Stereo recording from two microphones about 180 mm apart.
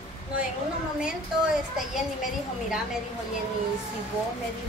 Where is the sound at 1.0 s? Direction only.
5° right (ahead or behind).